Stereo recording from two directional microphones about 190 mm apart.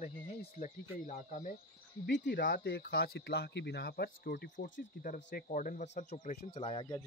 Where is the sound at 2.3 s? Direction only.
45° left (ahead or behind); by 6.9 s 30° left (ahead or behind).